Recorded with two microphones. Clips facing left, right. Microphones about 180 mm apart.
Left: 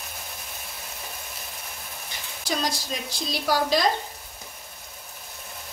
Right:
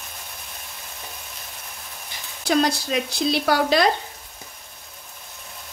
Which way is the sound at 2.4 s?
65° right (ahead or behind).